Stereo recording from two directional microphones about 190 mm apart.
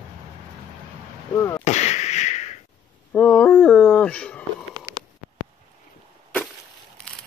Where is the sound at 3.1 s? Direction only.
5° left (ahead or behind).